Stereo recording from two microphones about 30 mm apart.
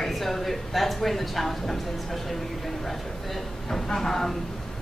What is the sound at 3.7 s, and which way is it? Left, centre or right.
Speech, centre.